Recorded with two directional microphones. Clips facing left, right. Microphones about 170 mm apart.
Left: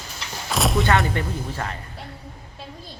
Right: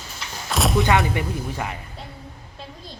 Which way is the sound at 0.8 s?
15° right (ahead or behind).